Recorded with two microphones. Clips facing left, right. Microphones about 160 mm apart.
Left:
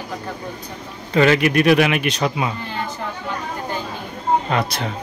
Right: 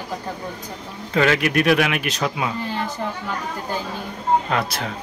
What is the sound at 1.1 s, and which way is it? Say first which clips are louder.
Speech: left 3 dB; centre (ahead or behind).